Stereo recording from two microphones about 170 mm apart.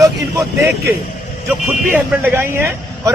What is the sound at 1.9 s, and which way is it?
Speech, 10° right (ahead or behind).